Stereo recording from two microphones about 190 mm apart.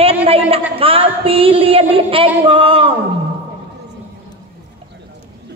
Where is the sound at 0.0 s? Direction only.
30° right (ahead or behind).